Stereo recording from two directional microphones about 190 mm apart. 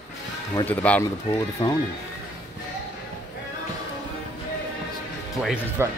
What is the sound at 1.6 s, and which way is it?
Speech, 25° left (ahead or behind).